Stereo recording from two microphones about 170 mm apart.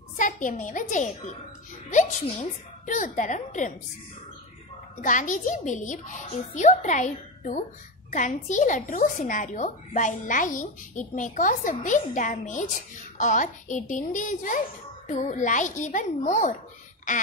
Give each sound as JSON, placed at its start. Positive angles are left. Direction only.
{"t": 0.2, "sound": "a woman's voice", "side_deg": 50}
{"t": 5.0, "sound": "a woman's voice", "side_deg": 50}